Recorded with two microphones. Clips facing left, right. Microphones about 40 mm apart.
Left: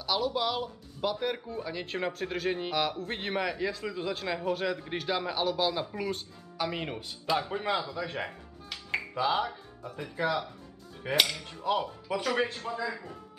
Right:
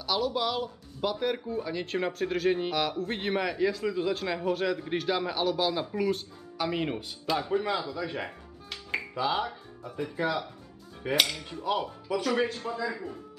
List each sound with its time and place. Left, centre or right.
0.0 s speech: centre
7.3 s a man's voice: centre